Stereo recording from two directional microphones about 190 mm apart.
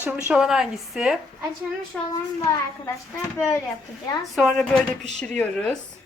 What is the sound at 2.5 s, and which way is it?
A child's voice, 15° left (ahead or behind).